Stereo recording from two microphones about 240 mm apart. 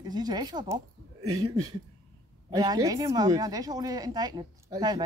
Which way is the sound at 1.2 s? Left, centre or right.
Right.